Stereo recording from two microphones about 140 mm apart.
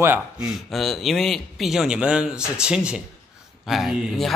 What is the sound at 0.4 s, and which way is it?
A man's voice, centre (ahead or behind).